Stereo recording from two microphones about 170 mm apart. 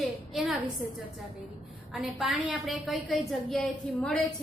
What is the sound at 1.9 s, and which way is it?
A woman's voice, 5° right (ahead or behind).